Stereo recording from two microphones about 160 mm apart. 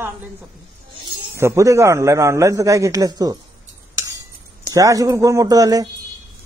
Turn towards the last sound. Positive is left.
turn(degrees=-20)  # may be behind; listen again after turning